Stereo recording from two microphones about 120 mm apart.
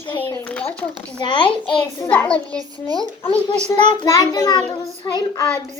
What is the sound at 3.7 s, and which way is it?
A child's voice, 35° left (ahead or behind).